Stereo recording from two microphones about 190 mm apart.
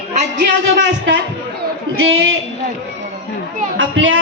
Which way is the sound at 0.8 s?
80° right.